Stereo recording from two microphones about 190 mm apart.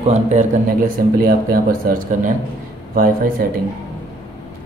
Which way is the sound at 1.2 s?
50° right (ahead or behind).